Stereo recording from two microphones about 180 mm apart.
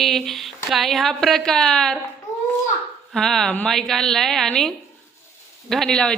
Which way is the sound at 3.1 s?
Centre (ahead or behind).